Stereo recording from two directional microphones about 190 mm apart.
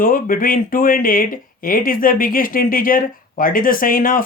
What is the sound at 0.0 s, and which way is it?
Speech, 50° left (ahead or behind).